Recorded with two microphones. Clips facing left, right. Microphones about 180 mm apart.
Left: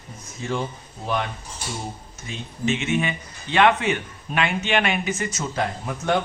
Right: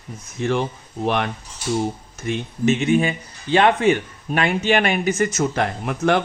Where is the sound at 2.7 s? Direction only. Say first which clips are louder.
Right 6 dB; 35° right (ahead or behind).